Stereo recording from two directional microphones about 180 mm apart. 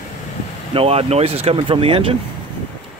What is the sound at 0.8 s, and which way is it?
Speech, 35° right (ahead or behind).